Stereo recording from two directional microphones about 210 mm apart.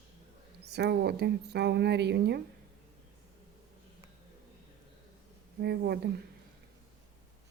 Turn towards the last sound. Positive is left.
turn(degrees=-50)  # may be behind; listen again after turning